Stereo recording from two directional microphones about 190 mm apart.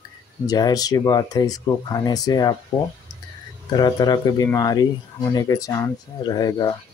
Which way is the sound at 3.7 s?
20° left (ahead or behind).